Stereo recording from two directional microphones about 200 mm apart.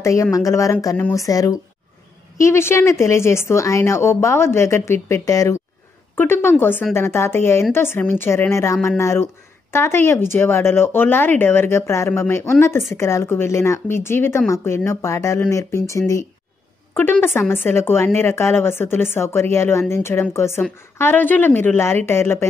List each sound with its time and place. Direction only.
0.0 s speech: 15° left (ahead or behind)